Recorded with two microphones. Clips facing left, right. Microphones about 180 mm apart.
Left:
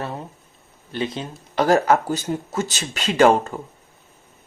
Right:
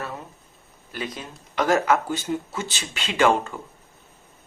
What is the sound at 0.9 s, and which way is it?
Speech, 25° left (ahead or behind).